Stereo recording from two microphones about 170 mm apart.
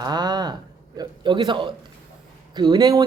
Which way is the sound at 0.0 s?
25° right (ahead or behind).